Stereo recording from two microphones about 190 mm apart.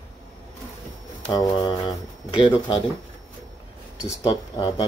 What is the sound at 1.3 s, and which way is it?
Speech, 20° left (ahead or behind).